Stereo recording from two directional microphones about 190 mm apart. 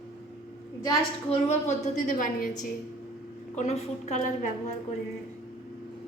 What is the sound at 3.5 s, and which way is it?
A woman's voice, 35° left (ahead or behind).